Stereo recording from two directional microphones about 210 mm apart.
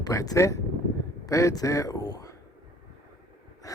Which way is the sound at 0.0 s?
15° left (ahead or behind).